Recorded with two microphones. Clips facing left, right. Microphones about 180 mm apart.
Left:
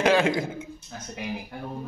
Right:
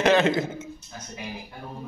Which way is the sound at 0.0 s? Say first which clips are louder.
Right 1 dB; 10° left (ahead or behind).